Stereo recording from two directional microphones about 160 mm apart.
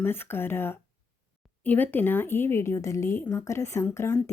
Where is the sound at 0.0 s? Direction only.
15° left (ahead or behind).